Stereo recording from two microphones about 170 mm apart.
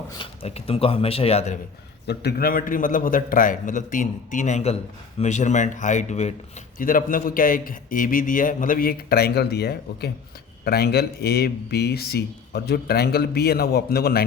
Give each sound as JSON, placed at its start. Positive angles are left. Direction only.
{"t": 0.2, "sound": "speech", "side_deg": 35}
{"t": 2.0, "sound": "a man's voice", "side_deg": 65}
{"t": 6.7, "sound": "a man's voice", "side_deg": 55}